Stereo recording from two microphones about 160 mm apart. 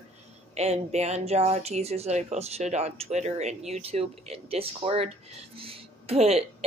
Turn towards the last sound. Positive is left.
turn(degrees=-40)  # may be behind; listen again after turning